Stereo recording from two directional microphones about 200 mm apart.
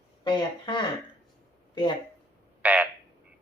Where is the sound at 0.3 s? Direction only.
20° left (ahead or behind).